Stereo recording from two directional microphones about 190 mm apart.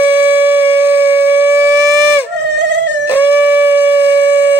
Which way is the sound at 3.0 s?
10° right (ahead or behind).